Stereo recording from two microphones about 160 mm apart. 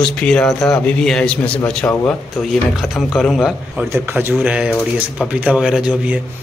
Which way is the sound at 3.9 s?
15° right (ahead or behind).